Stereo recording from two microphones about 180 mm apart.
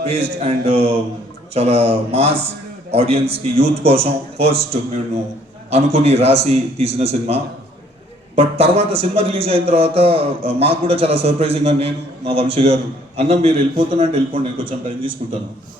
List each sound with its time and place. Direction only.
0.0 s a man's voice: 35° right (ahead or behind)